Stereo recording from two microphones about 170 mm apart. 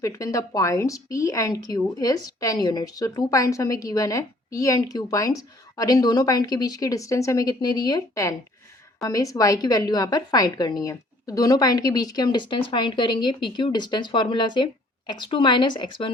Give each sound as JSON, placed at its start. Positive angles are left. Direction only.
{"t": 0.0, "sound": "a woman's voice", "side_deg": 20}